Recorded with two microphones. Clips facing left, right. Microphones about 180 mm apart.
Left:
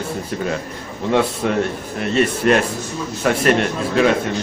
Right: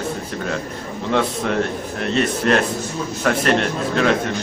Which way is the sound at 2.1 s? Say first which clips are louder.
Left 2 dB; 5° left (ahead or behind).